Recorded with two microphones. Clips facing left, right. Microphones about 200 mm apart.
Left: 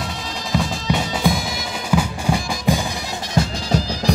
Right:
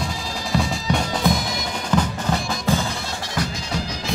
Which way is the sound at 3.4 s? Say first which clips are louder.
Left 5 dB; 25° left (ahead or behind).